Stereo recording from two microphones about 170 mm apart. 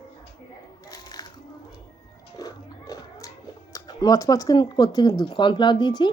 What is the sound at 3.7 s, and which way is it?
Speech, 20° left (ahead or behind).